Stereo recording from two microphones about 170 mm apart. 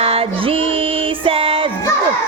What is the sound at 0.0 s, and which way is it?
Music, 35° right (ahead or behind).